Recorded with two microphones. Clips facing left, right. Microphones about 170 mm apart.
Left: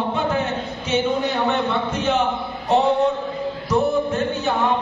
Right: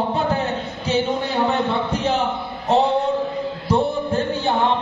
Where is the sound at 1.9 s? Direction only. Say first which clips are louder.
Even; 35° right (ahead or behind).